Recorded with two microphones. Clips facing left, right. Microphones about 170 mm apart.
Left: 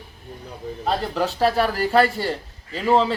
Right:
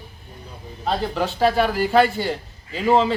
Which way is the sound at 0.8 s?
Centre (ahead or behind).